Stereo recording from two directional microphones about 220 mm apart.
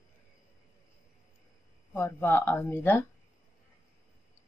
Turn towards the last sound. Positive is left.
turn(degrees=10)  # may be behind; listen again after turning